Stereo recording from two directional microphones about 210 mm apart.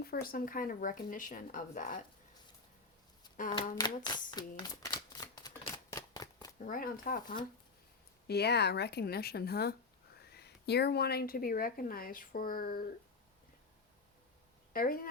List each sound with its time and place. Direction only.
0.0 s speech: 45° left (ahead or behind)
3.8 s typewriter: 20° left (ahead or behind)
6.7 s speech: 40° left (ahead or behind)
14.7 s speech: 45° left (ahead or behind)